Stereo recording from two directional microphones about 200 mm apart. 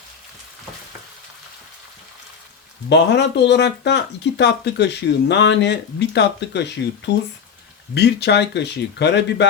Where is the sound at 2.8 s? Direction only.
60° left (ahead or behind).